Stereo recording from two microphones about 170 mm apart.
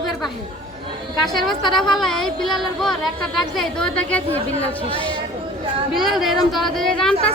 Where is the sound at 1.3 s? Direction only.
Centre (ahead or behind).